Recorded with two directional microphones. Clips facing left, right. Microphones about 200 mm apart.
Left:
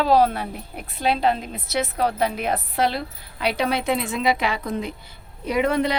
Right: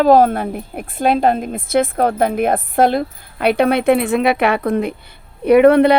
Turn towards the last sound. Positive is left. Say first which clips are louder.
# right 12 dB
turn(degrees=-60)  # may be behind; listen again after turning